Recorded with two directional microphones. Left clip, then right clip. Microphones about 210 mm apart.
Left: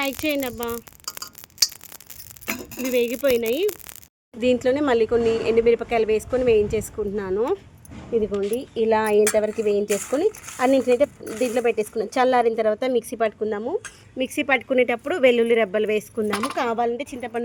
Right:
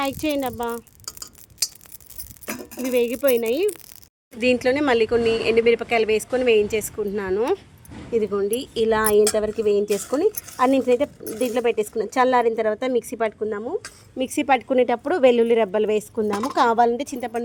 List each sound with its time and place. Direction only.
0.0 s speech: 5° right (ahead or behind)
2.5 s speech: 10° right (ahead or behind)
14.2 s speech: 5° right (ahead or behind)
16.6 s a woman's voice: 25° right (ahead or behind)